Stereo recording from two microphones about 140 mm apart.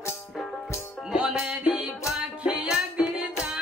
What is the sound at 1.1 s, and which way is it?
Music, 5° right (ahead or behind).